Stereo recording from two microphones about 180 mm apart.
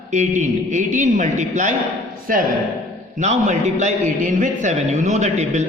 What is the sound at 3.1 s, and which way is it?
A man's voice, 40° right (ahead or behind).